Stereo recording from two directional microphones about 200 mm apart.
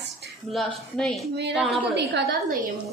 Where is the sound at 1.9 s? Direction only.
60° right (ahead or behind).